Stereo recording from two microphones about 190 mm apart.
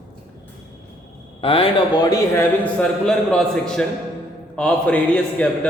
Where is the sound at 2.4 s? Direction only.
5° left (ahead or behind).